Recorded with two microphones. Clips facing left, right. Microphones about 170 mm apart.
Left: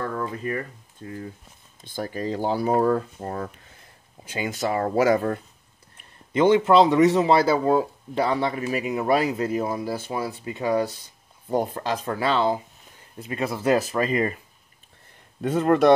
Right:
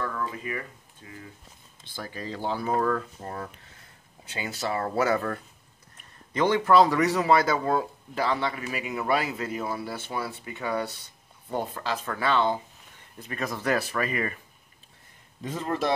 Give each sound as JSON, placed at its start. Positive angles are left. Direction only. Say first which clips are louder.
{"t": 0.0, "sound": "speech", "louder": "left 4 dB", "side_deg": 35}
{"t": 4.6, "sound": "a man's voice", "louder": "left 5 dB", "side_deg": 40}
{"t": 15.4, "sound": "speech", "louder": "left 10 dB", "side_deg": 65}